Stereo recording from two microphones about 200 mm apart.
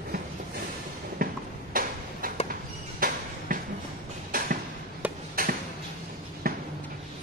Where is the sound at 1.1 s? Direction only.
45° right (ahead or behind).